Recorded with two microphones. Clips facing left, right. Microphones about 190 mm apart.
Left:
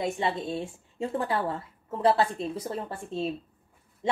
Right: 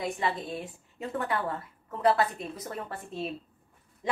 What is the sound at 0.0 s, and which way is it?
Speech, 25° left (ahead or behind).